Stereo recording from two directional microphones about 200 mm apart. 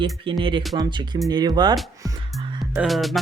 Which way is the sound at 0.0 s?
25° right (ahead or behind).